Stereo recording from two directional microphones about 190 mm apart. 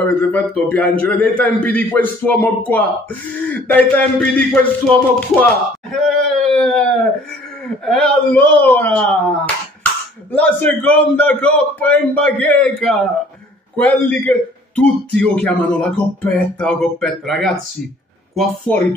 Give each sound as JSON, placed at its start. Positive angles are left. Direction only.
{"t": 0.3, "sound": "a man's voice", "side_deg": 10}
{"t": 3.7, "sound": "music", "side_deg": 10}
{"t": 7.8, "sound": "a man's voice", "side_deg": 5}
{"t": 10.3, "sound": "a man's voice", "side_deg": 10}